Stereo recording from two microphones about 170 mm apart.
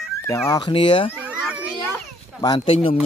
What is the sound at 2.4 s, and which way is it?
Speech, 25° left (ahead or behind).